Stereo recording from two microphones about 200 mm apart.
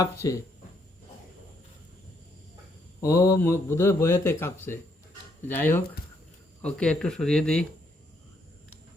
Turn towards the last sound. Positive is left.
turn(degrees=5)  # may be behind; listen again after turning